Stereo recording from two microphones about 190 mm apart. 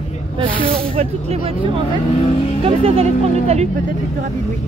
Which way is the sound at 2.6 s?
30° right (ahead or behind).